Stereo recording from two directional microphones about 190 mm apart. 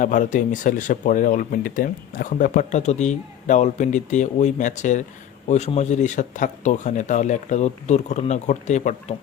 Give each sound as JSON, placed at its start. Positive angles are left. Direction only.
{"t": 0.0, "sound": "speech", "side_deg": 45}